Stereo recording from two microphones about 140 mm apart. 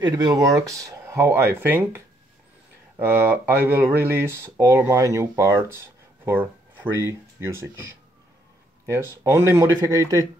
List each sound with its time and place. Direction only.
0.0 s speech: 30° right (ahead or behind)
8.8 s speech: 20° right (ahead or behind)